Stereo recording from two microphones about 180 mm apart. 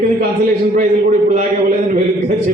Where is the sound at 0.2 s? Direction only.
55° right (ahead or behind).